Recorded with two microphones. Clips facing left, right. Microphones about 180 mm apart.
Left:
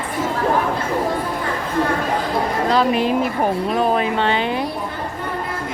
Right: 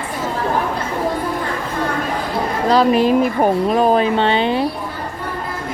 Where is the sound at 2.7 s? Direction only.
40° right (ahead or behind).